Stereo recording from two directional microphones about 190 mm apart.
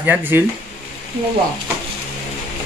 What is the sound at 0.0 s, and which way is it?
Speech, 10° right (ahead or behind).